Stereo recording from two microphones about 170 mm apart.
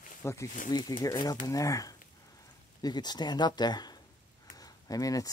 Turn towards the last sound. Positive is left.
turn(degrees=20)  # may be behind; listen again after turning